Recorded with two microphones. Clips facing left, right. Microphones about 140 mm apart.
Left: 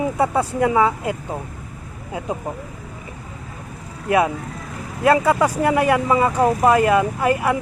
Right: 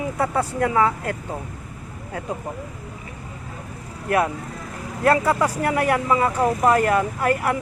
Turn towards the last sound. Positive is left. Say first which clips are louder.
# left 2 dB
turn(degrees=15)  # may be behind; listen again after turning